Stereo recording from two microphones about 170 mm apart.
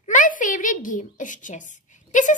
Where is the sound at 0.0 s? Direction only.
50° left (ahead or behind).